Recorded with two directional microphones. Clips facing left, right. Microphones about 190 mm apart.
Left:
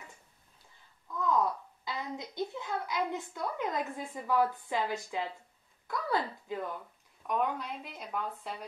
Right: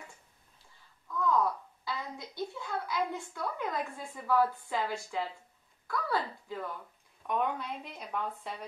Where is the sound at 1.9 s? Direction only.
20° left (ahead or behind).